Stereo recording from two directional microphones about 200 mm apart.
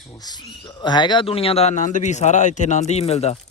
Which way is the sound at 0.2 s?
20° left (ahead or behind).